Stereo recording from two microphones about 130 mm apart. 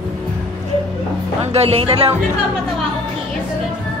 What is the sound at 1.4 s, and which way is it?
Speech, 50° right (ahead or behind).